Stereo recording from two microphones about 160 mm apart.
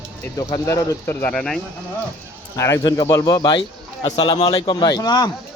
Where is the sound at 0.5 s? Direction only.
20° left (ahead or behind).